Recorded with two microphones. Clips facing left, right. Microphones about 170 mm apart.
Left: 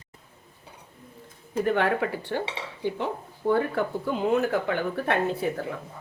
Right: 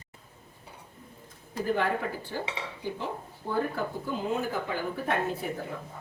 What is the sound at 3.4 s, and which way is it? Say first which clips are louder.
Speech: left 7 dB; 90° left.